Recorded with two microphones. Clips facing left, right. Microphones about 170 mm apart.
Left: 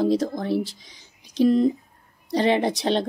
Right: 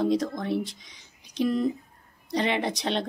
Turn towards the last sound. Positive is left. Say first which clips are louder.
# left 5 dB
turn(degrees=35)  # may be behind; listen again after turning